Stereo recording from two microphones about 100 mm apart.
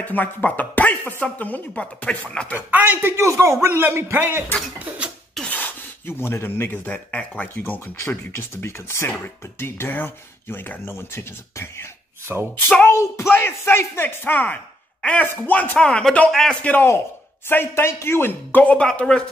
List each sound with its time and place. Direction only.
0.0 s speech: 15° left (ahead or behind)
2.5 s a man's voice: 15° right (ahead or behind)
4.7 s a sound: 15° right (ahead or behind)
5.5 s speech: 20° left (ahead or behind)
16.7 s speech: 25° left (ahead or behind); by 19.2 s 10° left (ahead or behind)